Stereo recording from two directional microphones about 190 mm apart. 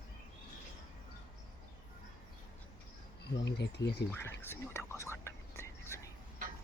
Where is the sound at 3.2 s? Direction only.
60° left (ahead or behind).